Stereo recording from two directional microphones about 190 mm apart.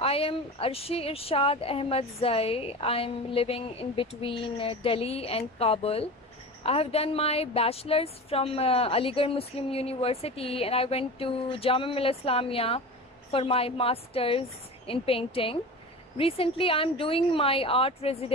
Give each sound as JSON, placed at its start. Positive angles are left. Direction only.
{"t": 0.0, "sound": "a woman's voice", "side_deg": 30}